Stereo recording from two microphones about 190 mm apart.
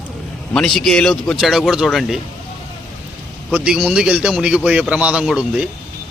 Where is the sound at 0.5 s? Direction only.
Centre (ahead or behind).